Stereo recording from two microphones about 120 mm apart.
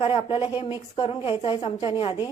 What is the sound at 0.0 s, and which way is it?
A woman's voice, 50° left (ahead or behind).